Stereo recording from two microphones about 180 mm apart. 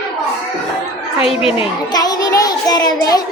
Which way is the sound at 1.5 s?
25° left (ahead or behind).